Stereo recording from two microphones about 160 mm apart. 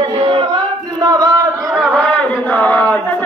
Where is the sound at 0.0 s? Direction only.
35° right (ahead or behind).